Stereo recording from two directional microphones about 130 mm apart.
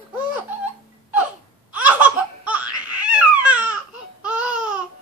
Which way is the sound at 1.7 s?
10° right (ahead or behind).